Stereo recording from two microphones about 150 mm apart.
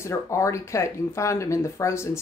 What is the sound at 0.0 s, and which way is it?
Speech, 20° left (ahead or behind).